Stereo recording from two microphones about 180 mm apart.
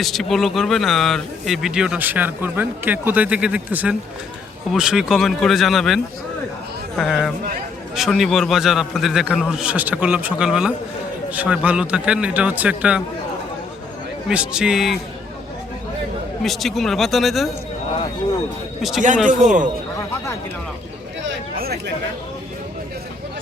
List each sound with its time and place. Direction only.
0.0 s a man's voice: centre (ahead or behind)
14.3 s speech: 5° right (ahead or behind)
16.4 s speech: centre (ahead or behind)
18.8 s a man's voice: centre (ahead or behind)
19.3 s a man's voice: 45° right (ahead or behind)
21.5 s chatter: 60° right (ahead or behind)